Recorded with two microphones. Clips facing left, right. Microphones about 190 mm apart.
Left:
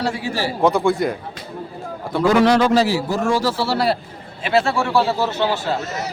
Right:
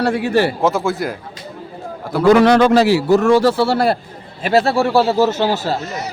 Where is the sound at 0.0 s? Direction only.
60° right (ahead or behind).